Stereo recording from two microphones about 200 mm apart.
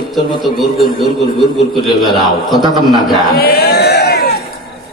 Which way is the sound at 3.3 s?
50° left (ahead or behind).